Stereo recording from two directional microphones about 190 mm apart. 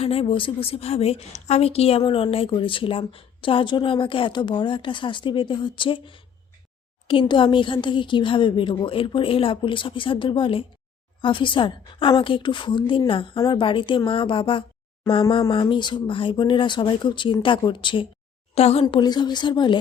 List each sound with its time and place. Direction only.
0.0 s a woman's voice: 30° left (ahead or behind)